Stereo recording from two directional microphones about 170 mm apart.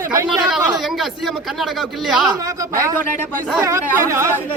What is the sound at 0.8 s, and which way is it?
Speech, centre (ahead or behind).